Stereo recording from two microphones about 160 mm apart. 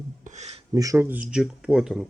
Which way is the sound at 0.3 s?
45° right (ahead or behind).